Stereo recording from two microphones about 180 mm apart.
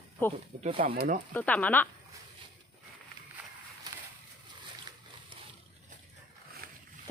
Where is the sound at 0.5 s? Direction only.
45° right (ahead or behind).